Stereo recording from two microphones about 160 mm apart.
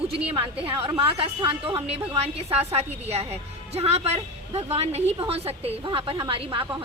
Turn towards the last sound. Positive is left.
turn(degrees=-35)  # may be behind; listen again after turning